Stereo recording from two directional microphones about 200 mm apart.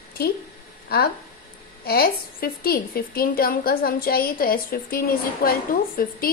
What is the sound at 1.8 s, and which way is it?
A woman's voice, 50° left (ahead or behind).